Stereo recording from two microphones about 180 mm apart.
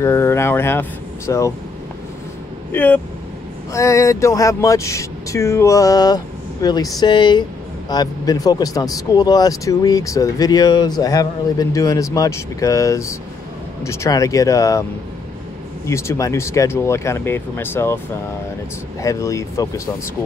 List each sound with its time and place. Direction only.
0.0 s speech: 15° left (ahead or behind)
2.7 s speech: 10° left (ahead or behind)
15.9 s speech: 15° left (ahead or behind)